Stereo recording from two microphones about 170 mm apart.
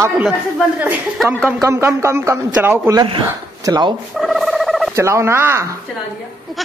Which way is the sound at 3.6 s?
25° right (ahead or behind).